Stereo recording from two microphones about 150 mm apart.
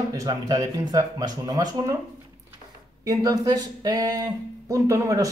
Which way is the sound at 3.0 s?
20° right (ahead or behind).